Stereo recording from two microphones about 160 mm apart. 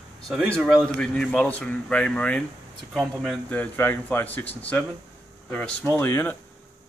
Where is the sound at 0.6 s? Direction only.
Centre (ahead or behind).